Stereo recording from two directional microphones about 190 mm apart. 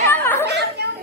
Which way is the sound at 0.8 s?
60° right (ahead or behind).